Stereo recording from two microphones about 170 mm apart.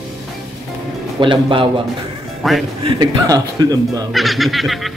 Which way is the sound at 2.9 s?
20° right (ahead or behind).